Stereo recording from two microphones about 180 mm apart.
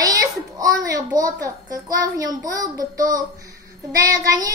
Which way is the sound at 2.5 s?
20° right (ahead or behind).